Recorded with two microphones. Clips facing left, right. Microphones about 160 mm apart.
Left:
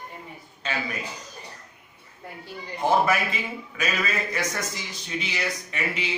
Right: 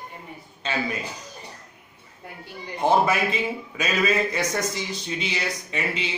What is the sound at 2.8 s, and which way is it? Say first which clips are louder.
Speech: right 2 dB; 25° right (ahead or behind).